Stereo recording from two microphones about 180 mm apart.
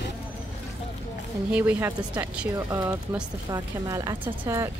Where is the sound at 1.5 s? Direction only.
10° right (ahead or behind).